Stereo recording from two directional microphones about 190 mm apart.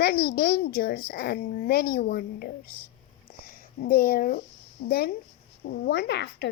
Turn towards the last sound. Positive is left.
turn(degrees=65)  # may be behind; listen again after turning